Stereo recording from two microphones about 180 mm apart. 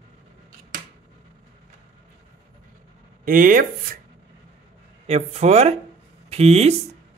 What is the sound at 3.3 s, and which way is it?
Speech, 50° right (ahead or behind).